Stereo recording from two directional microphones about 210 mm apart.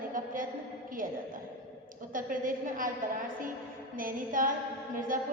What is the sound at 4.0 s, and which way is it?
A woman's voice, 40° right (ahead or behind).